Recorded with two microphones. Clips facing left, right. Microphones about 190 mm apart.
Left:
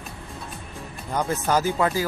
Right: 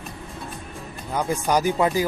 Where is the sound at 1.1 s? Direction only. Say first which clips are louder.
Right 1 dB; 10° right (ahead or behind).